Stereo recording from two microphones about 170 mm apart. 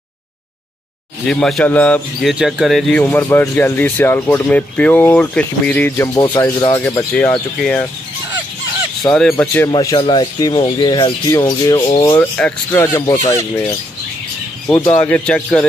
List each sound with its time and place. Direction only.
1.2 s a man's voice: 5° left (ahead or behind)
2.3 s speech: 5° right (ahead or behind); by 7.1 s 20° left (ahead or behind)
7.2 s speech: 5° left (ahead or behind)
9.1 s speech: 5° left (ahead or behind)
9.7 s speech: 25° left (ahead or behind)
12.4 s a man's voice: 5° left (ahead or behind)
12.8 s speech: 20° left (ahead or behind)
14.7 s speech: 10° left (ahead or behind)